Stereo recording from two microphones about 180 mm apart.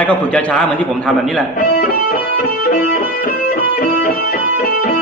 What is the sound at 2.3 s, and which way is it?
Music, 55° left (ahead or behind).